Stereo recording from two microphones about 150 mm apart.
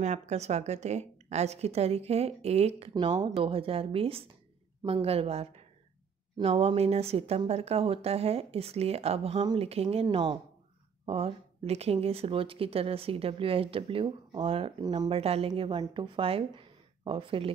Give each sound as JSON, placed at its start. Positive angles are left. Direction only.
{"t": 0.0, "sound": "speech", "side_deg": -50}
{"t": 2.9, "sound": "speech", "side_deg": -30}
{"t": 3.3, "sound": "speech", "side_deg": -40}
{"t": 10.0, "sound": "speech", "side_deg": -30}
{"t": 14.8, "sound": "speech", "side_deg": -25}
{"t": 15.0, "sound": "speech", "side_deg": -40}